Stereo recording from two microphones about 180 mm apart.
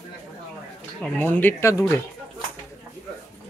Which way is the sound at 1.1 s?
10° left (ahead or behind).